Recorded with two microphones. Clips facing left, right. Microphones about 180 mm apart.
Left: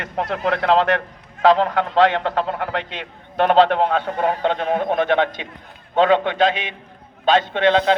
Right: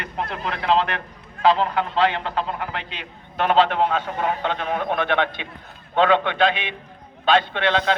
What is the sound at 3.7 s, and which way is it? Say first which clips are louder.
A man's voice: left 3 dB; 50° left (ahead or behind).